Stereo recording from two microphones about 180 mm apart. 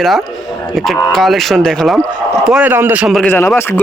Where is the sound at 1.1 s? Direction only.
Centre (ahead or behind).